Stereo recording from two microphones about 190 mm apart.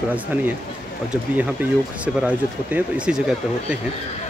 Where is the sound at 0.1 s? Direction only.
10° right (ahead or behind).